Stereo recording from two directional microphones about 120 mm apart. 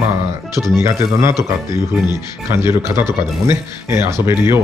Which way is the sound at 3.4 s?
20° right (ahead or behind).